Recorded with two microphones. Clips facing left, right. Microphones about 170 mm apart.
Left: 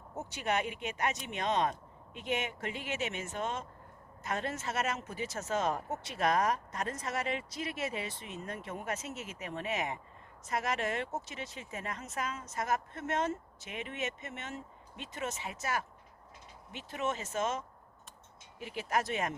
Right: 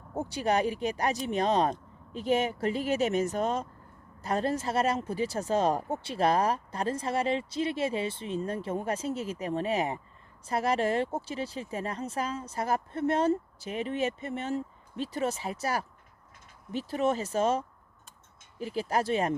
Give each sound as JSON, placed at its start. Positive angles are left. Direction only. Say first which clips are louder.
{"t": 0.1, "sound": "speech", "louder": "right 6 dB", "side_deg": -30}